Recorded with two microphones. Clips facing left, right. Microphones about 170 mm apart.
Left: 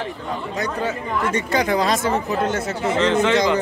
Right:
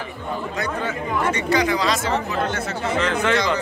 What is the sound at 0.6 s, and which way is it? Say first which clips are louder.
Speech: left 3 dB; 40° left (ahead or behind).